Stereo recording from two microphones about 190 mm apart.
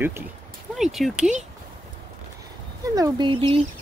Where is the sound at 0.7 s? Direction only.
Centre (ahead or behind).